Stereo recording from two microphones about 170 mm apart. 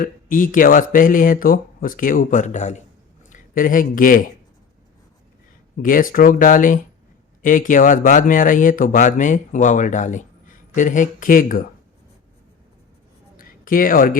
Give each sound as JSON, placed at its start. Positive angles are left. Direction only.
{"t": 0.0, "sound": "speech", "side_deg": 50}
{"t": 5.7, "sound": "speech", "side_deg": 55}
{"t": 13.3, "sound": "a sound", "side_deg": 55}